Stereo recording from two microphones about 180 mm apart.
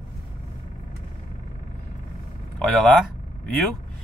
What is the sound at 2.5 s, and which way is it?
Speech, 5° left (ahead or behind).